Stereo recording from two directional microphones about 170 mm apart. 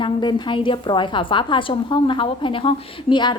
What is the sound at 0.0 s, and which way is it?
A woman's voice, 25° left (ahead or behind).